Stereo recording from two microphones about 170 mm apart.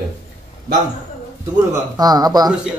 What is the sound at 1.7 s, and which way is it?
Speech, 20° right (ahead or behind).